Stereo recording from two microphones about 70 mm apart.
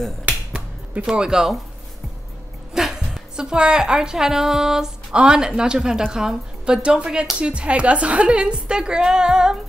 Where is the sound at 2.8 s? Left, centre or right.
Centre.